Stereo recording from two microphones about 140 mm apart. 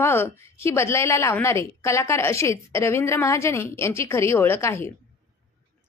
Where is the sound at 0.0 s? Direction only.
15° left (ahead or behind).